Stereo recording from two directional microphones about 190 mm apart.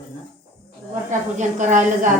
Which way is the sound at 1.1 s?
40° right (ahead or behind).